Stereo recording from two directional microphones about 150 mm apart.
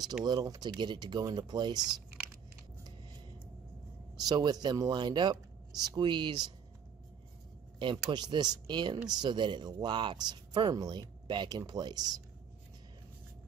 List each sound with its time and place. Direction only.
0.2 s speech: 25° right (ahead or behind)
1.8 s a sound: 5° right (ahead or behind)
4.2 s speech: 25° right (ahead or behind)
7.8 s speech: 30° right (ahead or behind)